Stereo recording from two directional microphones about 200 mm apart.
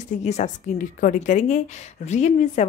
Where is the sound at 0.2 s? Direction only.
35° left (ahead or behind).